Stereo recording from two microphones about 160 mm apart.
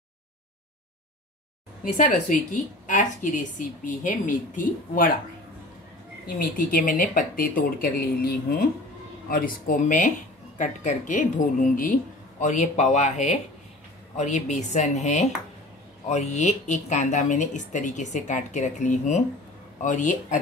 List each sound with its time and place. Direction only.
2.0 s a woman's voice: 55° left (ahead or behind)
6.2 s a woman's voice: 60° left (ahead or behind)
9.3 s a woman's voice: 60° left (ahead or behind)